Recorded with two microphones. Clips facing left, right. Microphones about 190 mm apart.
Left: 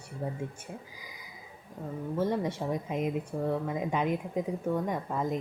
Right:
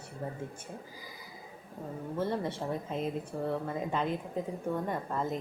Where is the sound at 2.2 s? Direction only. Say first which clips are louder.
Left 3 dB; 10° left (ahead or behind).